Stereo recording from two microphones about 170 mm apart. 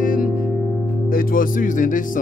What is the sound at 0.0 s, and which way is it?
Music, 55° left (ahead or behind).